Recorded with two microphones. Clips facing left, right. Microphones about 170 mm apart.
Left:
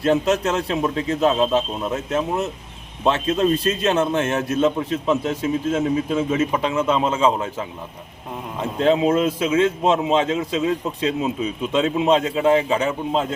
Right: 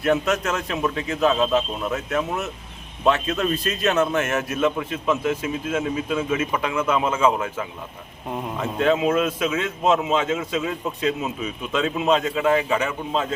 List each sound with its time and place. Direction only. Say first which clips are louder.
0.0 s a man's voice: left 3 dB; 30° left (ahead or behind)
8.8 s a man's voice: left 3 dB; 30° left (ahead or behind)